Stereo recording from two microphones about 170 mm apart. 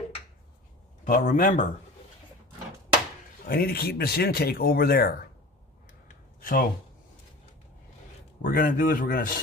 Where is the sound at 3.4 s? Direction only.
65° left (ahead or behind).